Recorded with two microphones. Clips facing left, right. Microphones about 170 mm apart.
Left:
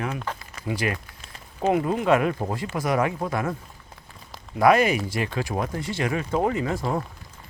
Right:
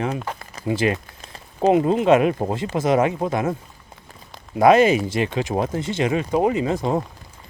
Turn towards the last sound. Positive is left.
turn(degrees=-20)  # may be behind; listen again after turning